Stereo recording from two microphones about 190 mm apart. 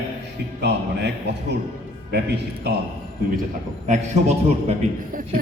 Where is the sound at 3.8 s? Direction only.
40° right (ahead or behind).